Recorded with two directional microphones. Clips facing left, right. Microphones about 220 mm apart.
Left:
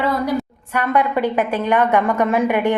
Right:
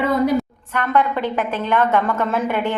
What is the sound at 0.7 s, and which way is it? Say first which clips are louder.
A woman's voice: left 1 dB; 10° left (ahead or behind).